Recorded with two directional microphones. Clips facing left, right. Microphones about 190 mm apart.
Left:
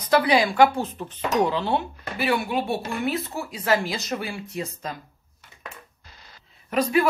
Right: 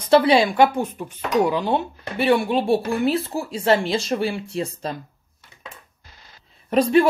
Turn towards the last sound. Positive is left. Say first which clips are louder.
# right 5 dB
turn(degrees=-30)  # may be behind; listen again after turning